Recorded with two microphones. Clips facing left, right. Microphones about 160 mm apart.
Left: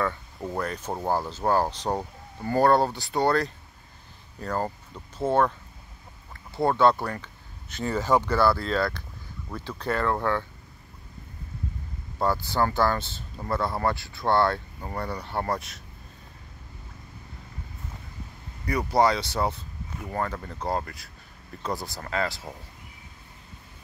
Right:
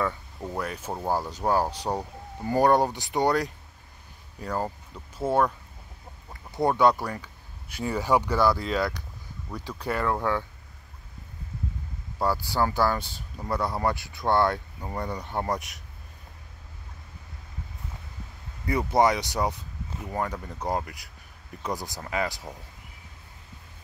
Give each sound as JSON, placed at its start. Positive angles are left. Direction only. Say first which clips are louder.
{"t": 0.0, "sound": "a sound", "louder": "left 1 dB", "side_deg": -10}
{"t": 0.6, "sound": "speech", "louder": "left 1 dB", "side_deg": -10}
{"t": 6.5, "sound": "speech", "louder": "even", "side_deg": -15}
{"t": 12.4, "sound": "speech", "louder": "even", "side_deg": -10}
{"t": 18.7, "sound": "speech", "louder": "even", "side_deg": -20}